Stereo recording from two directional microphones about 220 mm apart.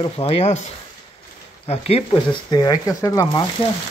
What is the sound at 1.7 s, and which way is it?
Speech, 25° left (ahead or behind).